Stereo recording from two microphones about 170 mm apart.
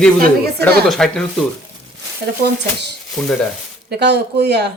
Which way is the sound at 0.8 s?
Centre (ahead or behind).